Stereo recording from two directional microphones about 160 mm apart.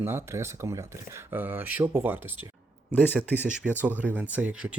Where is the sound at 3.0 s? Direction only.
10° left (ahead or behind).